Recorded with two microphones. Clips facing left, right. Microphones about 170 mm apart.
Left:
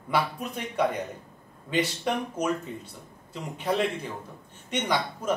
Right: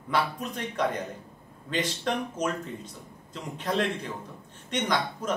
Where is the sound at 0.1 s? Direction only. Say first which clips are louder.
Left 1 dB; 10° left (ahead or behind).